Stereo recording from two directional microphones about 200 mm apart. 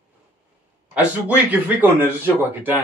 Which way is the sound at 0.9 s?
5° right (ahead or behind).